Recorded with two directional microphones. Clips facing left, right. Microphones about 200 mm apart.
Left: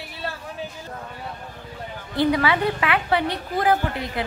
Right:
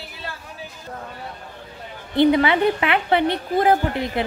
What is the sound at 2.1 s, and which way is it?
A woman's voice, 25° right (ahead or behind).